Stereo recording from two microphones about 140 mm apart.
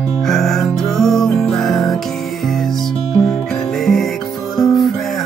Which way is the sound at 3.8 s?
Centre (ahead or behind).